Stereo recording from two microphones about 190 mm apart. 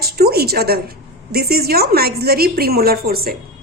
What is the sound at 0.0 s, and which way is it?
A woman's voice, 55° right (ahead or behind).